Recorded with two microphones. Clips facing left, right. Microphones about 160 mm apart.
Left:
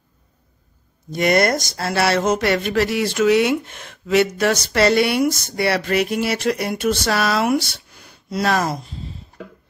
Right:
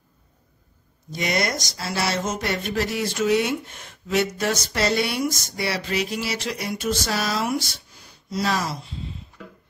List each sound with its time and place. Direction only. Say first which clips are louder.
1.1 s speech: left 8 dB; 55° left (ahead or behind)